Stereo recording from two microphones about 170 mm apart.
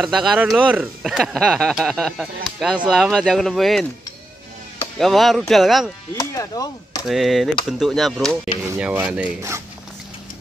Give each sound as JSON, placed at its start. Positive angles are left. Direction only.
{"t": 0.0, "sound": "speech", "side_deg": 0}
{"t": 4.9, "sound": "speech", "side_deg": 0}
{"t": 6.1, "sound": "chop", "side_deg": 20}
{"t": 7.1, "sound": "speech", "side_deg": 0}
{"t": 8.6, "sound": "speech", "side_deg": -10}